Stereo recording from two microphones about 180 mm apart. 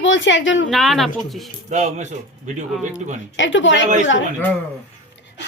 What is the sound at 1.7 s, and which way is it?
Speech, 40° right (ahead or behind).